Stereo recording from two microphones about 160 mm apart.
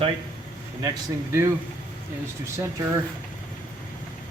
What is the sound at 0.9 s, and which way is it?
Speech, 20° right (ahead or behind).